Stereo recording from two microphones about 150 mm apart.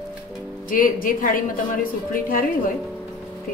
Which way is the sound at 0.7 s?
65° left (ahead or behind).